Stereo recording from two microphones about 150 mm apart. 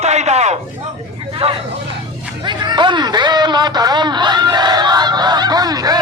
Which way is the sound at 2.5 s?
30° right (ahead or behind).